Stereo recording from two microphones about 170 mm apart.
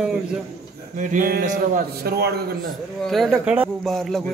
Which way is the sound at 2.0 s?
70° right (ahead or behind).